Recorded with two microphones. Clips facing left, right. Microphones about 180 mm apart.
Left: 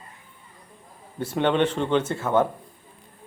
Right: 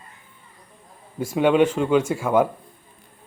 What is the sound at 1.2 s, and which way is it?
Speech, 10° right (ahead or behind).